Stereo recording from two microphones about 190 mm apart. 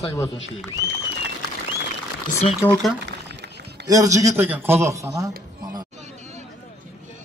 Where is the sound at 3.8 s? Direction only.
20° right (ahead or behind).